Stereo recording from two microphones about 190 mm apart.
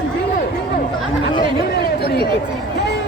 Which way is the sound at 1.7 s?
60° left (ahead or behind).